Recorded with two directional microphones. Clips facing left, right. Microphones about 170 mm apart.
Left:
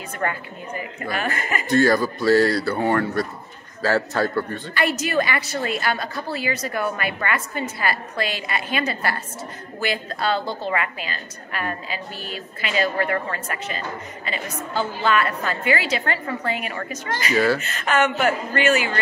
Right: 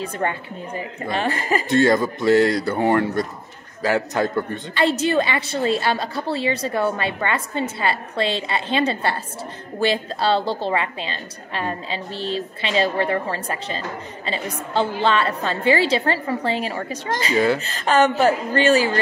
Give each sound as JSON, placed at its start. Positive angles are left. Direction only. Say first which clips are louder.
{"t": 0.0, "sound": "a woman's voice", "louder": "right 2 dB", "side_deg": -30}